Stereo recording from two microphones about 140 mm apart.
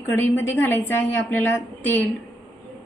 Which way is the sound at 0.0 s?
20° left (ahead or behind).